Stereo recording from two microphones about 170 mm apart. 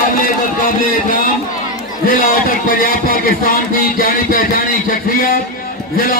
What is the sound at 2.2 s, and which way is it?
Speech, 55° left (ahead or behind).